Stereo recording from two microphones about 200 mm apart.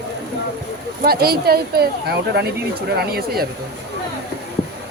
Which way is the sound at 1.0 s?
50° right (ahead or behind).